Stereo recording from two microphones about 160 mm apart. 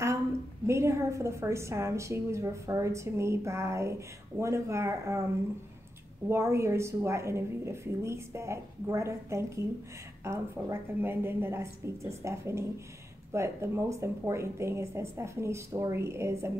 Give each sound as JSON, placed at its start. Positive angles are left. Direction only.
{"t": 0.7, "sound": "a woman's voice", "side_deg": -15}
{"t": 6.2, "sound": "a woman's voice", "side_deg": -15}